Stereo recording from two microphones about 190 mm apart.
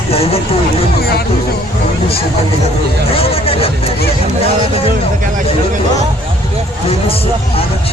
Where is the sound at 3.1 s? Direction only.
30° left (ahead or behind).